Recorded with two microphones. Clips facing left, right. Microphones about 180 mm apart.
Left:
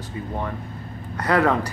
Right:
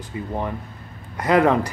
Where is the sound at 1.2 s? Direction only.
15° right (ahead or behind).